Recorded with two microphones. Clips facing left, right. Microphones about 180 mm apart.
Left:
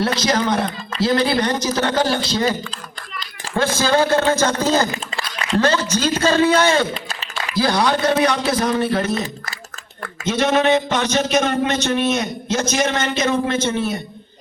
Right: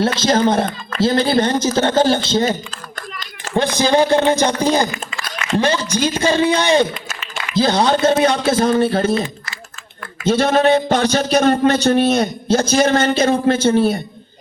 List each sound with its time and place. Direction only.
0.2 s a man's voice: 25° right (ahead or behind)
3.1 s a sound: 45° right (ahead or behind)
3.5 s a man's voice: 15° right (ahead or behind)
4.9 s a sound: 35° left (ahead or behind)
5.5 s a man's voice: 15° right (ahead or behind); by 9.2 s 30° right (ahead or behind)
10.2 s speech: 30° right (ahead or behind)